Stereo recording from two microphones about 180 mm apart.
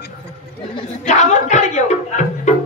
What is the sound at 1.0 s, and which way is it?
Music, 40° left (ahead or behind).